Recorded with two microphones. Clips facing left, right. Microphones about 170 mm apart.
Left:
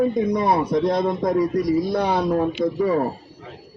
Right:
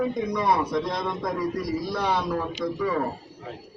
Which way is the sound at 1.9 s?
50° left (ahead or behind).